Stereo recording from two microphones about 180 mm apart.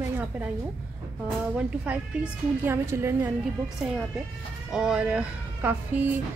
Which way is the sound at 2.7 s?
15° right (ahead or behind).